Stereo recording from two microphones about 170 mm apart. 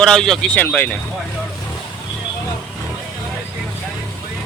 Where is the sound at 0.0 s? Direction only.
5° left (ahead or behind).